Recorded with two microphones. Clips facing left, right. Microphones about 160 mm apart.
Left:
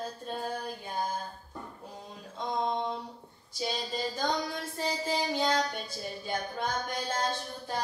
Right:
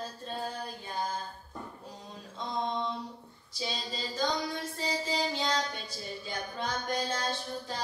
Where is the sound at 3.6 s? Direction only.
50° left (ahead or behind).